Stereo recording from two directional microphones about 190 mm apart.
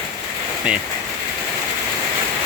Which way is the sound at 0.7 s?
5° right (ahead or behind).